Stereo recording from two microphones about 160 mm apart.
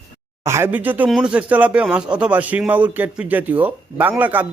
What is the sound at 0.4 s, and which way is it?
Speech, 15° right (ahead or behind).